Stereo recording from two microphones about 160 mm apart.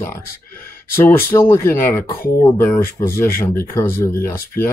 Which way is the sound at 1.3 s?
15° left (ahead or behind).